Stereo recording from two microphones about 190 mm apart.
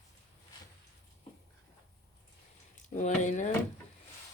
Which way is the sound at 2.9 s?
40° left (ahead or behind).